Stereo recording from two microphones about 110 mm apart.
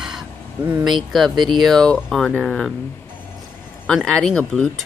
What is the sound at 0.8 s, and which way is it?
Speech, centre (ahead or behind).